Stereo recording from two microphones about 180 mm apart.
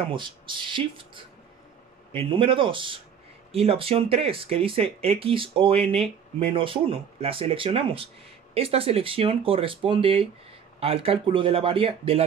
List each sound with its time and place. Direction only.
0.1 s speech: 25° right (ahead or behind)